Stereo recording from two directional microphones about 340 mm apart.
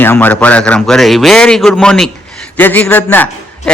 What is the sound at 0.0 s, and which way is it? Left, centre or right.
A man's voice, centre.